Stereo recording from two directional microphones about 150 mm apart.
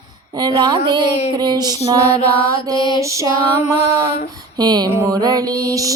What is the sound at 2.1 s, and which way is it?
Mantra, 40° left (ahead or behind).